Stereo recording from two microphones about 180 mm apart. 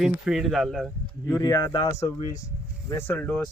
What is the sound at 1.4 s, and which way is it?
Speech, 20° left (ahead or behind).